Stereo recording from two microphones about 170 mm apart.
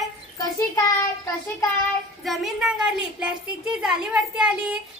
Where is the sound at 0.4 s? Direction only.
20° left (ahead or behind).